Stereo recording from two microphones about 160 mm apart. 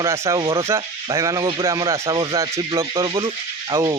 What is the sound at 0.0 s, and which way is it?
Speech, 20° right (ahead or behind).